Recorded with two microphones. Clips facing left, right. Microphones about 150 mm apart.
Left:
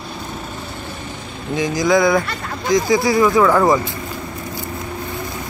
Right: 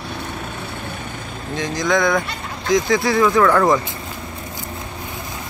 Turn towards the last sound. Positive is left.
turn(degrees=5)  # may be behind; listen again after turning